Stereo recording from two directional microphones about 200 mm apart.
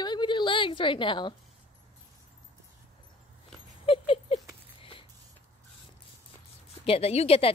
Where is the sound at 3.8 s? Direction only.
25° left (ahead or behind).